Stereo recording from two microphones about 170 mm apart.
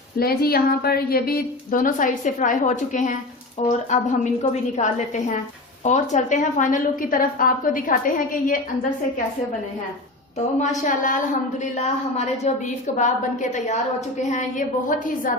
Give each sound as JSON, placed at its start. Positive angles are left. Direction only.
{"t": 0.2, "sound": "a woman's voice", "side_deg": 65}
{"t": 10.6, "sound": "a woman's voice", "side_deg": 45}
{"t": 14.8, "sound": "a woman's voice", "side_deg": 50}